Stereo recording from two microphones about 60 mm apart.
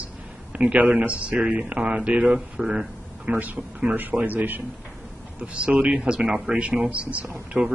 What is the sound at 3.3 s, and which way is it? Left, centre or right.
Speech, right.